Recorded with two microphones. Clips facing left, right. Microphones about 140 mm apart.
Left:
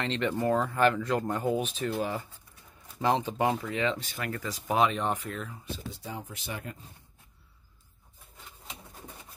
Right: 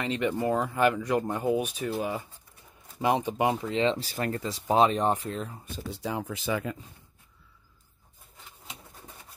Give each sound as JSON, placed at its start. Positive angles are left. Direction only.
{"t": 0.0, "sound": "speech", "side_deg": -10}
{"t": 5.9, "sound": "speech", "side_deg": -80}